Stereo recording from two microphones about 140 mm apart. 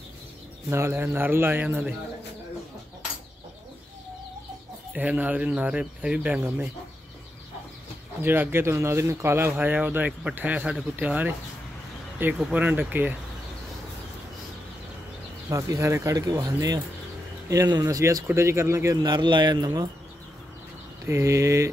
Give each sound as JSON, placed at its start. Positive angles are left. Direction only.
{"t": 0.7, "sound": "speech", "side_deg": -20}
{"t": 4.9, "sound": "speech", "side_deg": -10}
{"t": 8.2, "sound": "speech", "side_deg": -15}
{"t": 12.4, "sound": "speech", "side_deg": -5}
{"t": 15.5, "sound": "speech", "side_deg": -20}
{"t": 21.0, "sound": "speech", "side_deg": -20}